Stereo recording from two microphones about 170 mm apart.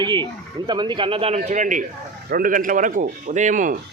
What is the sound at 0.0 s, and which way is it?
A man's voice, 25° right (ahead or behind).